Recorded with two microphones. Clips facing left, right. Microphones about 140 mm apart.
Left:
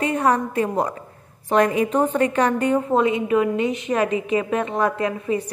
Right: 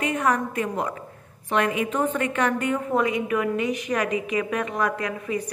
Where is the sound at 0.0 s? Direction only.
30° left (ahead or behind).